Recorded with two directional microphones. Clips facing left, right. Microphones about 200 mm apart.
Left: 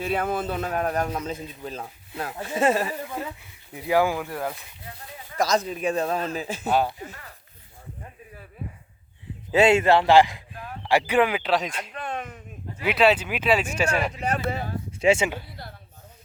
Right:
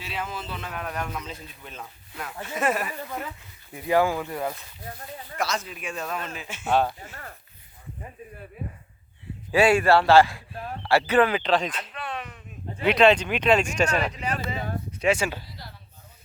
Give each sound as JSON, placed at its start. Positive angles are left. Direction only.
{"t": 0.0, "sound": "a man's voice", "side_deg": 55}
{"t": 3.8, "sound": "speech", "side_deg": 10}
{"t": 4.3, "sound": "speech", "side_deg": 0}
{"t": 5.4, "sound": "speech", "side_deg": 35}
{"t": 6.7, "sound": "speech", "side_deg": 5}
{"t": 9.5, "sound": "speech", "side_deg": 25}
{"t": 10.5, "sound": "a sound", "side_deg": -35}
{"t": 10.8, "sound": "speech", "side_deg": 15}
{"t": 11.9, "sound": "a sound", "side_deg": 45}
{"t": 12.8, "sound": "speech", "side_deg": 5}
{"t": 14.9, "sound": "speech", "side_deg": 25}
{"t": 15.4, "sound": "a sound", "side_deg": 55}